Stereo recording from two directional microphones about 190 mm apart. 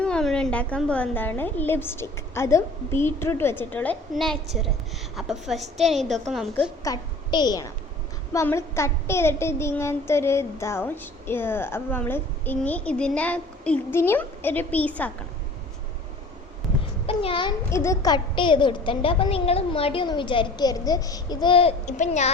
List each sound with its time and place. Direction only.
0.0 s a woman's voice: 5° left (ahead or behind)
6.8 s a woman's voice: 20° left (ahead or behind)
17.1 s a child's voice: 30° left (ahead or behind)
17.7 s a child's voice: 15° left (ahead or behind); by 22.3 s 40° left (ahead or behind)